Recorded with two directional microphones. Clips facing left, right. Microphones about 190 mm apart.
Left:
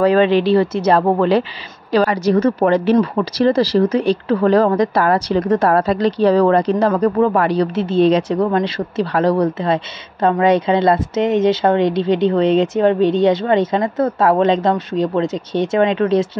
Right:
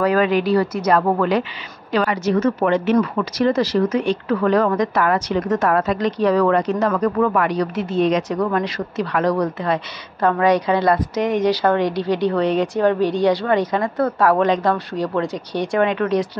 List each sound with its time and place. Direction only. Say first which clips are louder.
0.0 s a woman's voice: left 4 dB; 25° left (ahead or behind)